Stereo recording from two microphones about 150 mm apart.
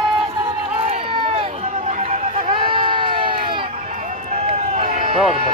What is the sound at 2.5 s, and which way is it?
Crowd, 35° right (ahead or behind).